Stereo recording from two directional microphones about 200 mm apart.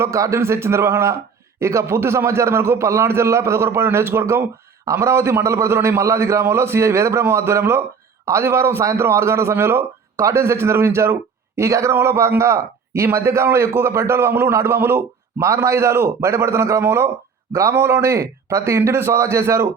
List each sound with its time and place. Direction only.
0.0 s a man's voice: 15° right (ahead or behind)